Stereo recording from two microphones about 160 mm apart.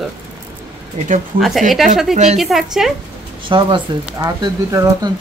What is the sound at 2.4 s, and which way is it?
Speech, centre (ahead or behind).